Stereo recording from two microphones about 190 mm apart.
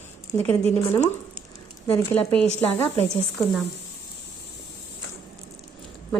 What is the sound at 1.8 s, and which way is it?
Speech, 10° left (ahead or behind).